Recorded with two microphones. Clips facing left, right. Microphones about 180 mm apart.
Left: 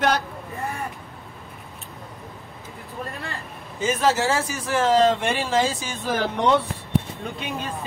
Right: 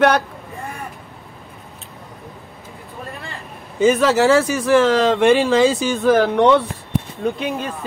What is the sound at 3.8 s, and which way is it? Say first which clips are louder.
Speech: right 7 dB; 65° right (ahead or behind).